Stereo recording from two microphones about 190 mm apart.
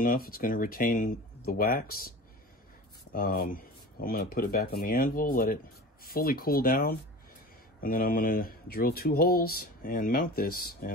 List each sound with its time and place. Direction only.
0.0 s speech: 50° left (ahead or behind)